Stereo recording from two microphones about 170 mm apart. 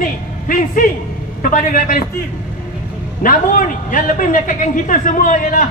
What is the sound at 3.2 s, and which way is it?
A man's voice, 50° left (ahead or behind).